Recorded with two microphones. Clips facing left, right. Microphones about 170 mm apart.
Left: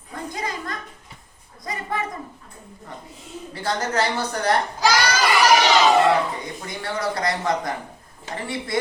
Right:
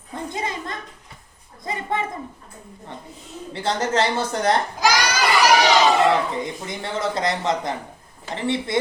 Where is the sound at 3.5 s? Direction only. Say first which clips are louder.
Right 2 dB; 25° right (ahead or behind).